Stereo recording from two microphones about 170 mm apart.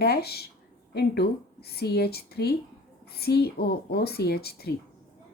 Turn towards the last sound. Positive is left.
turn(degrees=65)  # may be behind; listen again after turning